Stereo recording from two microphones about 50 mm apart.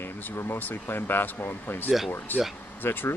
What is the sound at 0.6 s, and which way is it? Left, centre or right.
Speech, left.